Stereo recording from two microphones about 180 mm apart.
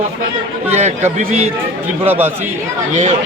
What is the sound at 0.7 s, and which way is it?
Speech, 40° right (ahead or behind).